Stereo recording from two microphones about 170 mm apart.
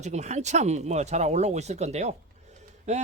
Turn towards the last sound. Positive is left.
turn(degrees=-40)  # may be behind; listen again after turning